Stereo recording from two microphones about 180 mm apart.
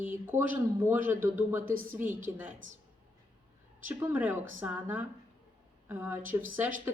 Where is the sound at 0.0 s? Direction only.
10° right (ahead or behind).